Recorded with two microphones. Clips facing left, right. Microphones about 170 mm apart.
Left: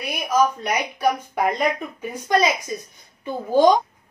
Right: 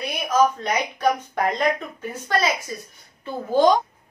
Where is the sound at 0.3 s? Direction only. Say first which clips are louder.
Even; 10° left (ahead or behind).